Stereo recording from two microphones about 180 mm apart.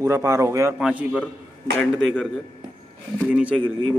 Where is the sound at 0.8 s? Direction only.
5° right (ahead or behind).